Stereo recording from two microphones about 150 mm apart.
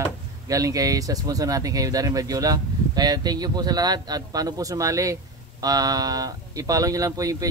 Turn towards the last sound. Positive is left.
turn(degrees=-25)  # may be behind; listen again after turning